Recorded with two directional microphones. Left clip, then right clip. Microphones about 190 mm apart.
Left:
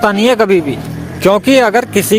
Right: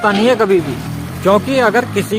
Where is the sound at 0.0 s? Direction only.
40° left (ahead or behind).